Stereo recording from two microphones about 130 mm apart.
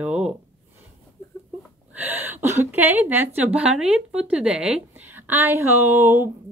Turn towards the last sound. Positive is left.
turn(degrees=-15)  # may be behind; listen again after turning